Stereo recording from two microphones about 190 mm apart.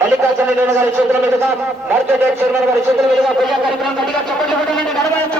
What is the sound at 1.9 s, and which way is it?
A man's voice, 10° right (ahead or behind).